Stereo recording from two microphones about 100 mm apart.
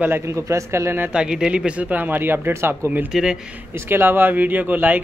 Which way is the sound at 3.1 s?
5° right (ahead or behind).